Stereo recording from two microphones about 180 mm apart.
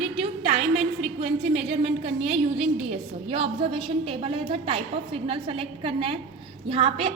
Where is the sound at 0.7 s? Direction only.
Centre (ahead or behind).